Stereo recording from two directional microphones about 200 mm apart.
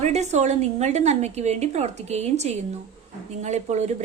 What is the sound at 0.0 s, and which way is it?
A woman's voice, 35° right (ahead or behind).